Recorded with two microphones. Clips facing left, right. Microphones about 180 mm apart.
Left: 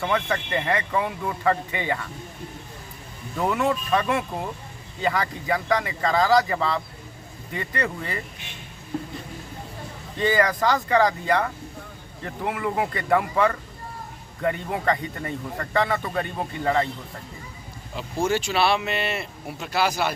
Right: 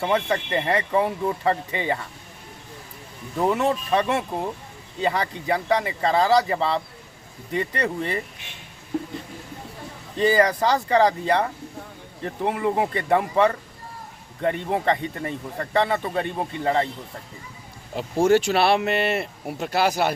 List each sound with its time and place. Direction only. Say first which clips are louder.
0.0 s speech: right 2 dB; 30° right (ahead or behind)
3.3 s speech: right 2 dB; 25° right (ahead or behind)
10.2 s speech: right 3 dB; 30° right (ahead or behind)
17.9 s speech: right 6 dB; 60° right (ahead or behind)